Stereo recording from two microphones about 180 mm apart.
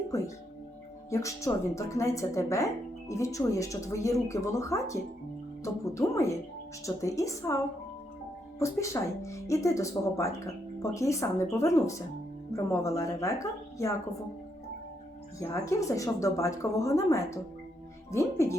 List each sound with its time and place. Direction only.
1.1 s speech: 15° left (ahead or behind)
15.4 s speech: 15° left (ahead or behind)